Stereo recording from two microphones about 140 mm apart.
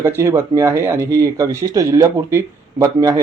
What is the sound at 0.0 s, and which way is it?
Speech, 20° right (ahead or behind).